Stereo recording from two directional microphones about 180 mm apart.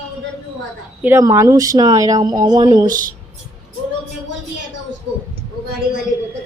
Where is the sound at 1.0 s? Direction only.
15° right (ahead or behind).